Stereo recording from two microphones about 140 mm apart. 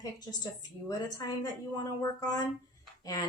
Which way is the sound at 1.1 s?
25° left (ahead or behind).